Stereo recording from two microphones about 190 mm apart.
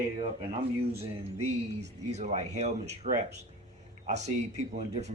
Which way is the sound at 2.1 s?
35° right (ahead or behind).